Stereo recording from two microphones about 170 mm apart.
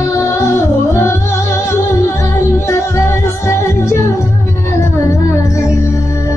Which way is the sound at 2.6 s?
15° left (ahead or behind).